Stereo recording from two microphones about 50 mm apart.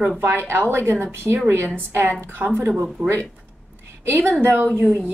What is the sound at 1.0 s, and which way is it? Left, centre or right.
Speech, right.